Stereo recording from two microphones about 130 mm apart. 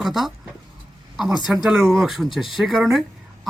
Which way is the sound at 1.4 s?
5° right (ahead or behind).